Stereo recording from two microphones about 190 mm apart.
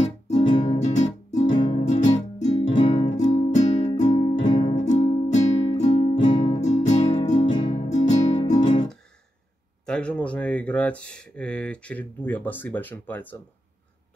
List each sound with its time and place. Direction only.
0.4 s music: 25° left (ahead or behind)
0.7 s music: 40° left (ahead or behind)
1.5 s music: 25° left (ahead or behind)
2.7 s music: 25° left (ahead or behind)
3.2 s music: 40° left (ahead or behind)
8.5 s music: 25° left (ahead or behind)
9.8 s speech: 5° left (ahead or behind)